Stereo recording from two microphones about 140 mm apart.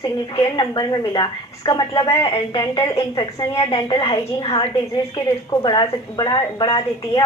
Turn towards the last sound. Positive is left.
turn(degrees=30)  # may be behind; listen again after turning